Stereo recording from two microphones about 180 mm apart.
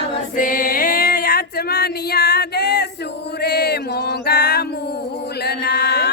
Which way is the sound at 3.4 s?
65° left (ahead or behind).